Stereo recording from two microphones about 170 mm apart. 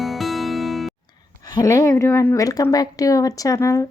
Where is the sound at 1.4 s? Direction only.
25° left (ahead or behind).